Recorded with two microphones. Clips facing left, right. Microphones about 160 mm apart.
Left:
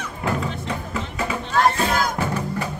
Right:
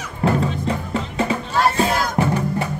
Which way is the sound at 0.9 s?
30° right (ahead or behind).